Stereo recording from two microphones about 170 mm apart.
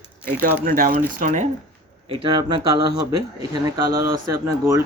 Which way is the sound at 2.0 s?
30° right (ahead or behind).